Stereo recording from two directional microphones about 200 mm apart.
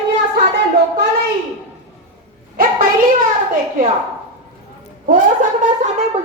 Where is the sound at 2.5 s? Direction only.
45° right (ahead or behind).